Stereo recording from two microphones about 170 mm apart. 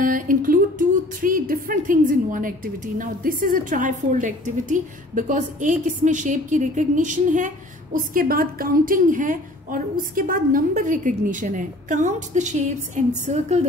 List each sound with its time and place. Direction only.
0.0 s speech: 55° right (ahead or behind)